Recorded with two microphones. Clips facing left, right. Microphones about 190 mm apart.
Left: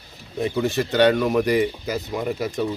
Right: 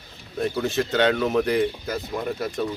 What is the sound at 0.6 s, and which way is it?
Speech, 10° left (ahead or behind).